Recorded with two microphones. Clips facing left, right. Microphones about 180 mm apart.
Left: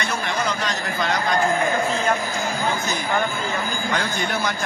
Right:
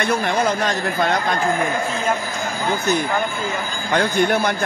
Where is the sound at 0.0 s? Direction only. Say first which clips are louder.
Right 6 dB; 55° right (ahead or behind).